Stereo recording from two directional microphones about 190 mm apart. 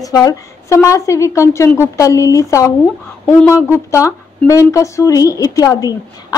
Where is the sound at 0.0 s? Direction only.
20° left (ahead or behind).